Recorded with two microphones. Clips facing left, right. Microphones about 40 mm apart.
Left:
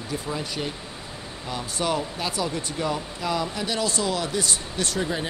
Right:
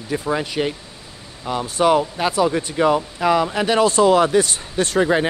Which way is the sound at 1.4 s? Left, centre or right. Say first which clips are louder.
Right 10 dB; right.